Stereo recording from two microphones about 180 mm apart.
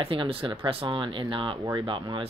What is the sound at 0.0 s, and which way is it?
Speech, 30° right (ahead or behind).